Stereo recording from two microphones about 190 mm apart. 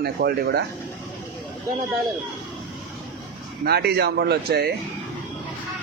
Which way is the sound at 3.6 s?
60° right (ahead or behind).